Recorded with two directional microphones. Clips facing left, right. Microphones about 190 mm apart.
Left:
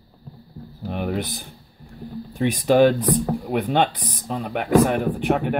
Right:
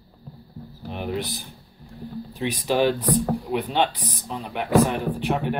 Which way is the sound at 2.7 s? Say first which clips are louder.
Left 5 dB; 55° left (ahead or behind).